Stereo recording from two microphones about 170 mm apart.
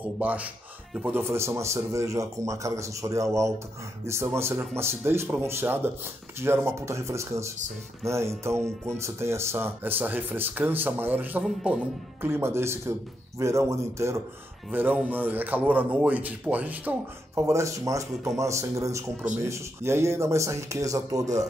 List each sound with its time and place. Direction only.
0.2 s speech: 10° right (ahead or behind)